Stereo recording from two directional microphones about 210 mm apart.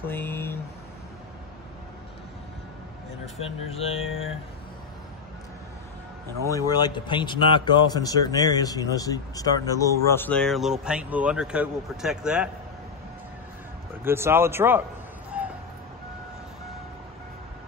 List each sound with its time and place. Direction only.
0.0 s speech: 10° left (ahead or behind)
3.7 s mantra: 30° left (ahead or behind)
4.0 s speech: 75° left (ahead or behind)
6.5 s a man's voice: 20° left (ahead or behind); by 12.4 s 5° right (ahead or behind)
14.0 s speech: 10° right (ahead or behind)
15.3 s a sound: 5° right (ahead or behind)